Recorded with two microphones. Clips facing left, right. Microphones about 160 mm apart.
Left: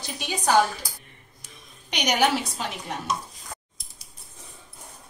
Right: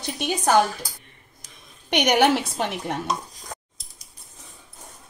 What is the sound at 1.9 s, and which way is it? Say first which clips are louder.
A woman's voice: right 5 dB; 55° right (ahead or behind).